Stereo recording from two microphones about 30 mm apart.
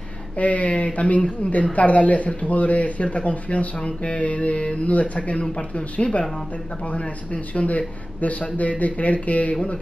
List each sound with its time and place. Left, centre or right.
0.4 s speech: left